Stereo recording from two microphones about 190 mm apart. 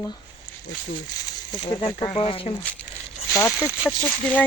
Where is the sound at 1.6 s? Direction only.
30° left (ahead or behind).